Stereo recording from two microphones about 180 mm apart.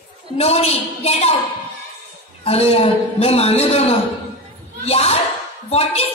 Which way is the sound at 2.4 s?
35° left (ahead or behind).